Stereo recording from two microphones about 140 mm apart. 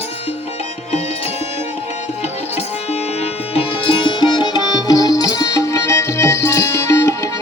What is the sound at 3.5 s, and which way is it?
Music, 40° left (ahead or behind).